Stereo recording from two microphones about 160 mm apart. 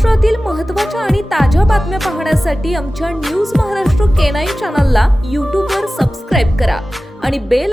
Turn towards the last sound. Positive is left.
turn(degrees=0)  # may be behind; listen again after turning